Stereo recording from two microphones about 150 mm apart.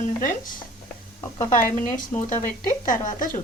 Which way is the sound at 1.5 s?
60° left (ahead or behind).